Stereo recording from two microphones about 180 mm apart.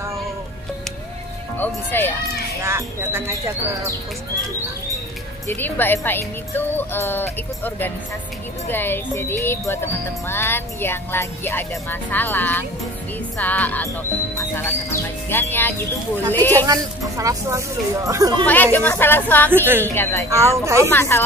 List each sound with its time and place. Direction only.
1.9 s speech: 10° left (ahead or behind)
2.6 s speech: 15° right (ahead or behind)
5.5 s speech: 10° left (ahead or behind)
16.5 s speech: 20° right (ahead or behind)
18.4 s speech: 10° left (ahead or behind)
19.5 s speech: 10° right (ahead or behind)
19.9 s speech: 15° left (ahead or behind)
20.2 s speech: 15° right (ahead or behind)
20.9 s speech: 15° left (ahead or behind)